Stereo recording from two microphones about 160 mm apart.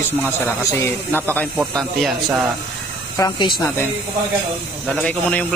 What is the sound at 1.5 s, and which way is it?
Speech, centre (ahead or behind).